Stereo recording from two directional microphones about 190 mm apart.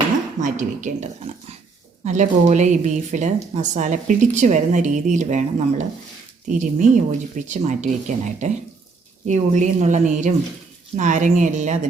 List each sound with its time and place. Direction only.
0.3 s a woman's voice: 40° right (ahead or behind)
2.0 s a woman's voice: 40° right (ahead or behind)